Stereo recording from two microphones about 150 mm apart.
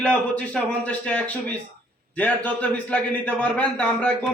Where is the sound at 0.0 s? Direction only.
10° left (ahead or behind).